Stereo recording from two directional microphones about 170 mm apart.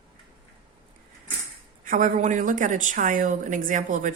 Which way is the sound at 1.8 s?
50° right (ahead or behind).